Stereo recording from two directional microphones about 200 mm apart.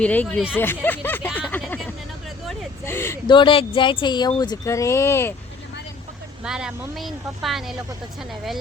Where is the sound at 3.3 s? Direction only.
25° left (ahead or behind).